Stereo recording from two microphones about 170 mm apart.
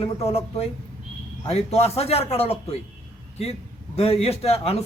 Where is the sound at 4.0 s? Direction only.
35° left (ahead or behind).